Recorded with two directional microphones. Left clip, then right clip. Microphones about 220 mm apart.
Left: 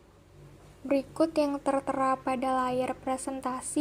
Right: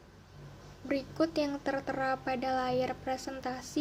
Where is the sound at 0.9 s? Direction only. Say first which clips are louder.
Left 5 dB; 15° left (ahead or behind).